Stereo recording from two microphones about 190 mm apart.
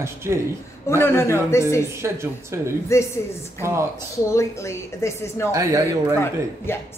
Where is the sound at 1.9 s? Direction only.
15° right (ahead or behind).